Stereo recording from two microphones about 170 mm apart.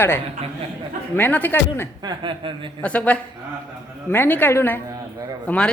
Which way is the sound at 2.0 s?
30° right (ahead or behind).